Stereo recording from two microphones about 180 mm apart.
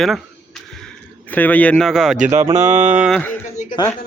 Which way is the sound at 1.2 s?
10° left (ahead or behind).